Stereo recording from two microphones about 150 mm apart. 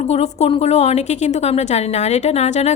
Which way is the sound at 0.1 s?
40° left (ahead or behind).